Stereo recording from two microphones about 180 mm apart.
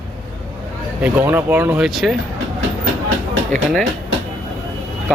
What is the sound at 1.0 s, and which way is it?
Speech, 10° right (ahead or behind).